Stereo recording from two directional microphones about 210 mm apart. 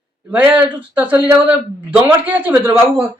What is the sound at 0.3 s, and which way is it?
Speech, 5° right (ahead or behind).